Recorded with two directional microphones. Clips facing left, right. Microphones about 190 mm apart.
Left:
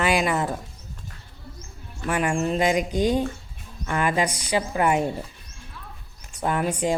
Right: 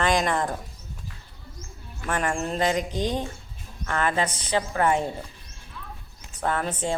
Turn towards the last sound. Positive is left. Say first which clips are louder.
# left 3 dB
turn(degrees=10)  # may be behind; listen again after turning